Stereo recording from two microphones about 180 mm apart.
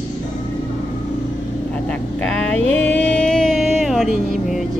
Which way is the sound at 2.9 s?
5° left (ahead or behind).